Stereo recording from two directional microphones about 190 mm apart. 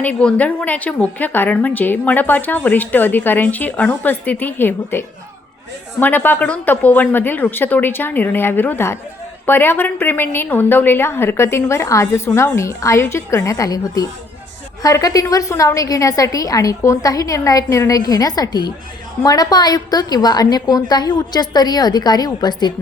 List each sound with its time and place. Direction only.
0.0 s a woman's voice: 5° left (ahead or behind); by 22.7 s 20° left (ahead or behind)